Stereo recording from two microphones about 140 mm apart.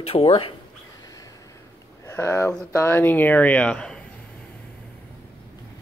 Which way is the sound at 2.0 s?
20° left (ahead or behind).